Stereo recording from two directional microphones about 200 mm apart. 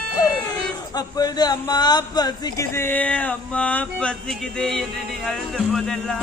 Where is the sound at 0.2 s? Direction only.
20° left (ahead or behind).